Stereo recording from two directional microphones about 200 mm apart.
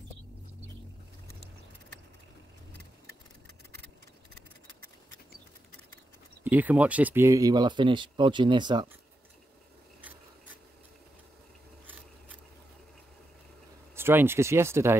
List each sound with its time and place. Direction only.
6.4 s speech: 10° right (ahead or behind)
13.9 s speech: 10° right (ahead or behind)